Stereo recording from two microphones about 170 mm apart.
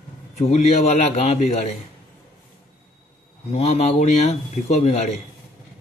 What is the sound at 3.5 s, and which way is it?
A man's voice, 35° left (ahead or behind).